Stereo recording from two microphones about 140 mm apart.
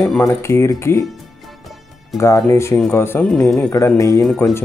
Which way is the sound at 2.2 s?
20° left (ahead or behind).